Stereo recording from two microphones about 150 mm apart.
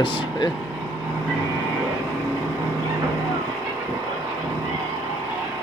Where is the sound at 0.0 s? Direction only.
35° left (ahead or behind).